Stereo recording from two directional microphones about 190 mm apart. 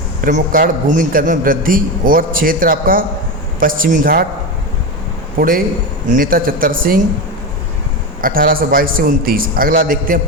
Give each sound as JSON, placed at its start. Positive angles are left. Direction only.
{"t": 0.3, "sound": "a man's voice", "side_deg": -45}
{"t": 5.4, "sound": "a man's voice", "side_deg": -50}
{"t": 8.2, "sound": "a man's voice", "side_deg": -50}